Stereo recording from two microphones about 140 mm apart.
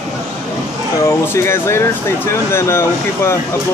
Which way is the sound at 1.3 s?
20° left (ahead or behind).